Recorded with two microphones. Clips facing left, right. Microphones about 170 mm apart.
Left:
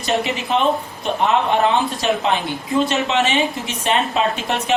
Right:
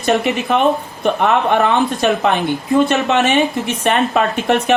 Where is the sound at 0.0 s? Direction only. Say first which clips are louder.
Right 5 dB; 60° right (ahead or behind).